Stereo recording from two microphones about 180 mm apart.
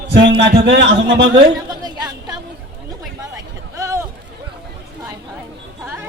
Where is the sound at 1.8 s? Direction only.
20° right (ahead or behind).